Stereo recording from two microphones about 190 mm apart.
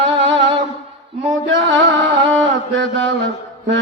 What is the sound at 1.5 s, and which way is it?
Music, 75° right (ahead or behind).